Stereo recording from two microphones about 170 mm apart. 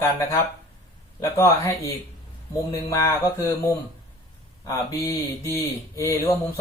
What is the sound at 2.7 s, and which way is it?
Speech, 20° left (ahead or behind).